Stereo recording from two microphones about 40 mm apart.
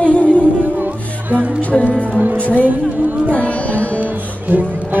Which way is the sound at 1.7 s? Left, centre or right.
Left.